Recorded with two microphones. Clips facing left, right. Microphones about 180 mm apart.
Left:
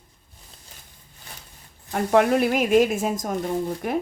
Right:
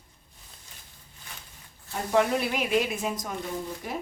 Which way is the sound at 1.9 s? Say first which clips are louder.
Left 6 dB; 60° left (ahead or behind).